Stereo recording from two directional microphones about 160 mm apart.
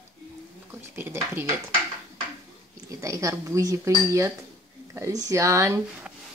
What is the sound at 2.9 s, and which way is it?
Speech, 20° right (ahead or behind).